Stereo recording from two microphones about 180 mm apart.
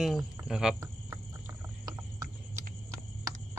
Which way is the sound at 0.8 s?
15° right (ahead or behind).